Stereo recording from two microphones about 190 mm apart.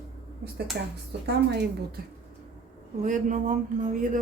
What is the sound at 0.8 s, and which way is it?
A woman's voice, 65° right (ahead or behind).